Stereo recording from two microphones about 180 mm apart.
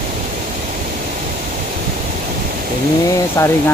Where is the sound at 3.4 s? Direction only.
15° left (ahead or behind).